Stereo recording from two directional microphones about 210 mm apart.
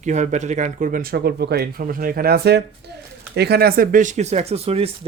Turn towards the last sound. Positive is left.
turn(degrees=-30)  # may be behind; listen again after turning